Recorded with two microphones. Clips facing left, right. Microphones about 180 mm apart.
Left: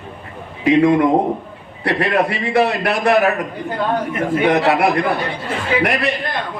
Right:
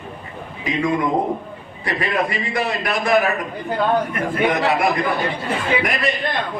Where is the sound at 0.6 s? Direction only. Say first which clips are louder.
Left 8 dB; 65° left (ahead or behind).